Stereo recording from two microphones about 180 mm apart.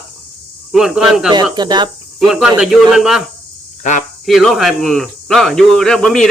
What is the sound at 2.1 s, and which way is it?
Speech, 5° right (ahead or behind).